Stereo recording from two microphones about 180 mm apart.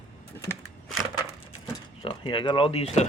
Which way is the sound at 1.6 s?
25° left (ahead or behind).